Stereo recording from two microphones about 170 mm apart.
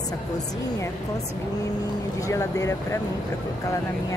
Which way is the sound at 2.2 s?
15° left (ahead or behind).